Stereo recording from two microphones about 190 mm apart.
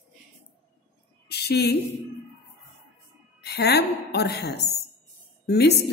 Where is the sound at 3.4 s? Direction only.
60° left (ahead or behind).